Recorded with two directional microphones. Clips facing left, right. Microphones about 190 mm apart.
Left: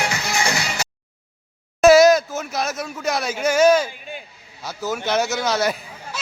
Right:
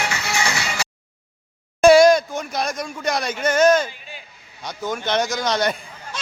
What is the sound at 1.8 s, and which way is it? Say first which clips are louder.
Speech: even; centre (ahead or behind).